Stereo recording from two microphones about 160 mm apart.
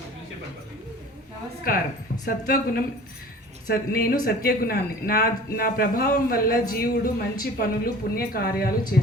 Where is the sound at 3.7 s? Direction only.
70° left (ahead or behind).